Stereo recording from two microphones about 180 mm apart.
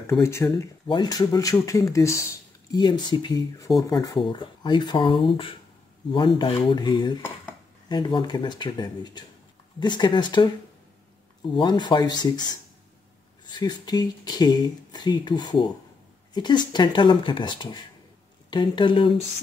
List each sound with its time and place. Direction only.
0.2 s speech: 15° left (ahead or behind)
11.5 s speech: 25° left (ahead or behind)
13.5 s speech: 25° left (ahead or behind)